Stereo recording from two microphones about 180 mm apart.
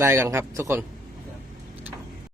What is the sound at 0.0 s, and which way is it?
Speech, 15° right (ahead or behind).